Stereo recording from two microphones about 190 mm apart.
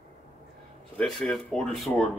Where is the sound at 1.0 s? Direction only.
5° left (ahead or behind).